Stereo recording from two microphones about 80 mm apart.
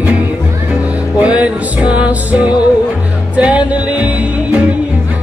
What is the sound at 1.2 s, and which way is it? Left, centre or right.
Music, centre.